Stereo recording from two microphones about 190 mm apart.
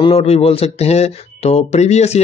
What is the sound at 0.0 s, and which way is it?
Speech, 30° left (ahead or behind).